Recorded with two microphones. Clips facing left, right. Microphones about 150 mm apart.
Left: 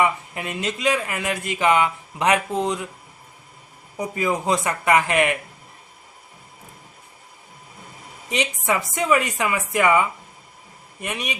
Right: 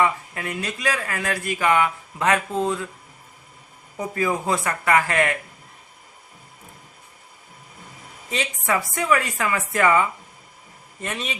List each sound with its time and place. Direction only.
0.0 s speech: 20° left (ahead or behind)
3.9 s speech: 15° left (ahead or behind)
8.3 s a man's voice: 20° left (ahead or behind)